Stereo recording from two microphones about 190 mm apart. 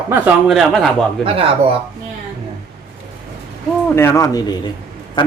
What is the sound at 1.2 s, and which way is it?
Speech, 30° right (ahead or behind).